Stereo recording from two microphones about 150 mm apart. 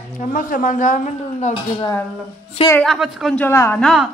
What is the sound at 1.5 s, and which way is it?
Speech, 35° left (ahead or behind).